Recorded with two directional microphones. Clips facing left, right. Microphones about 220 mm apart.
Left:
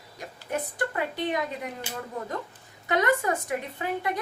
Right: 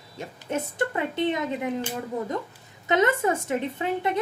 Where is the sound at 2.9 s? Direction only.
25° right (ahead or behind).